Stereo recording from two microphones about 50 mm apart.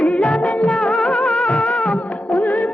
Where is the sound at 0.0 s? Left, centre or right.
Left.